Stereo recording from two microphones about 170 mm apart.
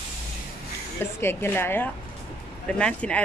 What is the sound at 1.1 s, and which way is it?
Speech, 15° left (ahead or behind).